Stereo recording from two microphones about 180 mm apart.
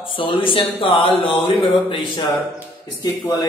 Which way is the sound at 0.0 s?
30° left (ahead or behind).